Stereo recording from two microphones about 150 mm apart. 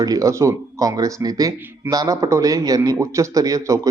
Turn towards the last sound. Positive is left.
turn(degrees=-20)  # may be behind; listen again after turning